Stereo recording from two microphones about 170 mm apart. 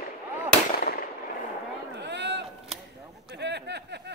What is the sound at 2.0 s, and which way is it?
Run, 85° right.